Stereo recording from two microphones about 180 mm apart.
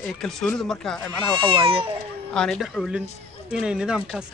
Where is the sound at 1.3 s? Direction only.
30° right (ahead or behind).